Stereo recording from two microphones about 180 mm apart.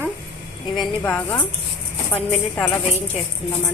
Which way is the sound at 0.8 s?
10° left (ahead or behind).